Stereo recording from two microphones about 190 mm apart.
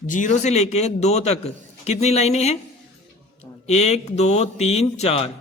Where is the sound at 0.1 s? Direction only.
40° left (ahead or behind).